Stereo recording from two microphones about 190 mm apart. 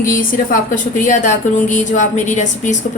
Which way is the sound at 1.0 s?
40° left (ahead or behind).